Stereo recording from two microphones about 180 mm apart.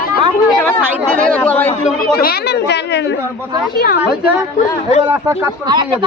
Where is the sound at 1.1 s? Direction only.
5° left (ahead or behind).